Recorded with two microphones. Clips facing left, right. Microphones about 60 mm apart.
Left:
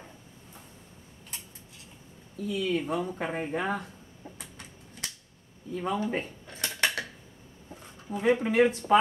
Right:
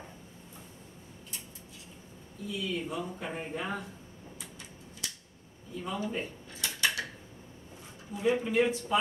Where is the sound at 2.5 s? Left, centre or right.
Left.